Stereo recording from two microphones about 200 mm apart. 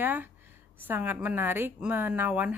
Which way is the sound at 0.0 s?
10° right (ahead or behind).